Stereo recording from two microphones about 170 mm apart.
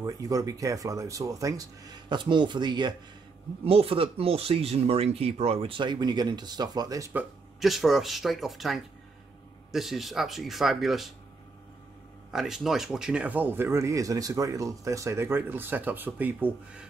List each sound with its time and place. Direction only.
0.0 s speech: 20° right (ahead or behind)
7.1 s speech: 5° right (ahead or behind)
12.3 s speech: 5° right (ahead or behind)